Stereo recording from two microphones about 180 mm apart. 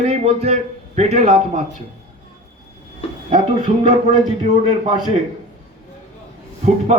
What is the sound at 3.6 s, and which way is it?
Speech, 40° right (ahead or behind).